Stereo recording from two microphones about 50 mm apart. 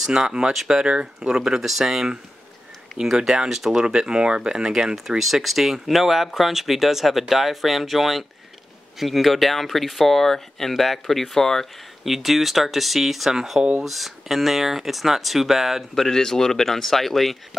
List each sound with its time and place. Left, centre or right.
0.0 s speech: centre
3.8 s speech: centre
12.0 s speech: centre
16.0 s speech: centre